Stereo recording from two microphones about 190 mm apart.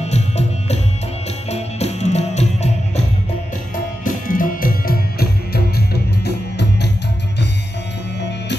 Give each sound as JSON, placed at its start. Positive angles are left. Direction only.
{"t": 0.0, "sound": "music", "side_deg": 35}
{"t": 4.0, "sound": "music", "side_deg": 45}